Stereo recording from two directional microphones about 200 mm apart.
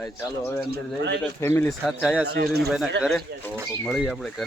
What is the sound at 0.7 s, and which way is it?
Speech, 60° right (ahead or behind).